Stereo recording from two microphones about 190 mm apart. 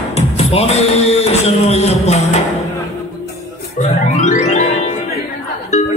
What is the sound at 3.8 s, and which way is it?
Music, 40° left (ahead or behind).